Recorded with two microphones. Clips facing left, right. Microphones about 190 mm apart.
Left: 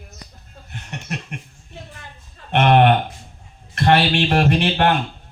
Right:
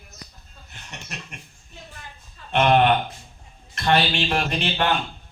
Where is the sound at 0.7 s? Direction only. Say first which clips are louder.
Left 9 dB; 60° left (ahead or behind).